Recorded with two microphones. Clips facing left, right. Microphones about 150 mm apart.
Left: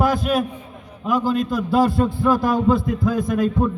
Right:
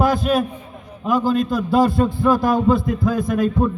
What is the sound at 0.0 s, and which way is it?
A man's voice, 25° right (ahead or behind).